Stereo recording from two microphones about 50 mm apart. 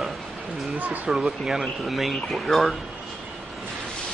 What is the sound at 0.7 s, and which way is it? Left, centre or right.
Speech, right.